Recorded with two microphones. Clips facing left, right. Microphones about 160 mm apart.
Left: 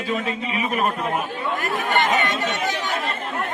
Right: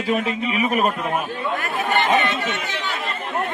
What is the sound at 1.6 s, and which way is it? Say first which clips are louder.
Chatter: left 1 dB; 40° left (ahead or behind).